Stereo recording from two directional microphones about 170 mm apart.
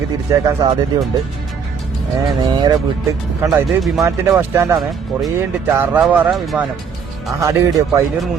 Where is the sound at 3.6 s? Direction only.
Centre (ahead or behind).